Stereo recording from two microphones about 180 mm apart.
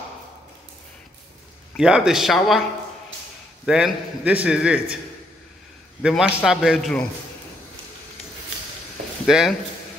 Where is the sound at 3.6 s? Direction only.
5° right (ahead or behind).